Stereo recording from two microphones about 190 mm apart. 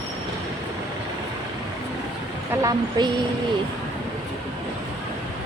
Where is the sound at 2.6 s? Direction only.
20° right (ahead or behind).